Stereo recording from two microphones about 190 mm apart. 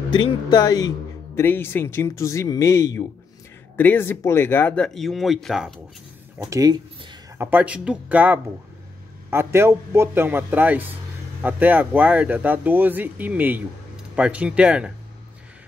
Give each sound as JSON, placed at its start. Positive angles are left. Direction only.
{"t": 0.1, "sound": "speech", "side_deg": 25}
{"t": 6.5, "sound": "a sound", "side_deg": -20}
{"t": 7.4, "sound": "speech", "side_deg": -5}